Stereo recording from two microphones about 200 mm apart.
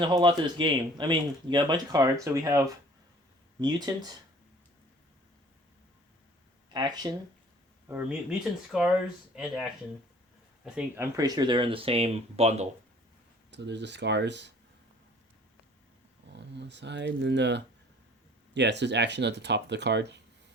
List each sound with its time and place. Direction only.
0.0 s speech: 25° right (ahead or behind)
6.7 s speech: 20° right (ahead or behind)
7.9 s speech: 5° right (ahead or behind)
10.6 s speech: 10° right (ahead or behind); by 12.6 s 30° right (ahead or behind)
13.5 s speech: 60° right (ahead or behind)
16.3 s speech: 60° right (ahead or behind)